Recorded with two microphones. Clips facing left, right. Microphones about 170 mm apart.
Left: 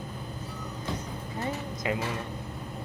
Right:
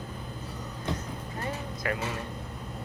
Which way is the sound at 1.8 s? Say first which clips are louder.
Left 2 dB; 20° left (ahead or behind).